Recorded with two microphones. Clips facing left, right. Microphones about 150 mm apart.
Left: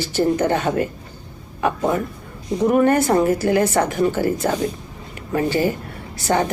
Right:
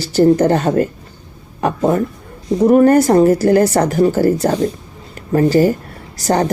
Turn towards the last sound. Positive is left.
turn(degrees=-40)  # may be behind; listen again after turning